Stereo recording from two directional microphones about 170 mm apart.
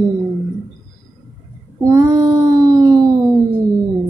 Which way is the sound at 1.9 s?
20° right (ahead or behind).